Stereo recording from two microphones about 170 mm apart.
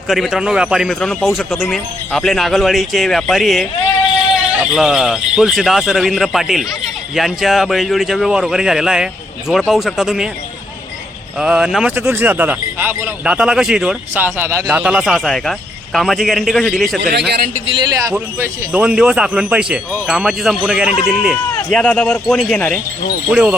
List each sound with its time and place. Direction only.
0.1 s speech: centre (ahead or behind)
11.3 s speech: 5° right (ahead or behind)
17.0 s a man's voice: 80° right
18.1 s speech: 10° right (ahead or behind); by 22.8 s 5° left (ahead or behind)
23.3 s speech: 5° right (ahead or behind)